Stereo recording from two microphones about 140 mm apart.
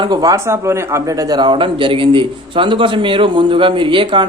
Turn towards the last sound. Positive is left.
turn(degrees=-35)  # may be behind; listen again after turning